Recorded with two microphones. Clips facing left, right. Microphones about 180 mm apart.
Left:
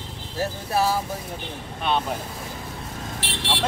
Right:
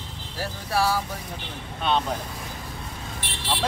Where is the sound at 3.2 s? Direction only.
90° left.